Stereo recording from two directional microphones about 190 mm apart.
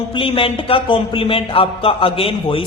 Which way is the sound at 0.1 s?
30° left (ahead or behind).